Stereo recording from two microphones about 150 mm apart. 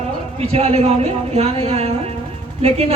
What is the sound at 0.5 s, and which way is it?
Speech, 45° right (ahead or behind).